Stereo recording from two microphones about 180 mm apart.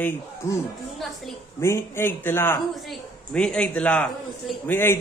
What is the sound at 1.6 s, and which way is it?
A man's voice, 15° left (ahead or behind).